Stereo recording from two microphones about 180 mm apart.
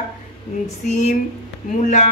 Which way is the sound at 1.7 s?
40° left (ahead or behind).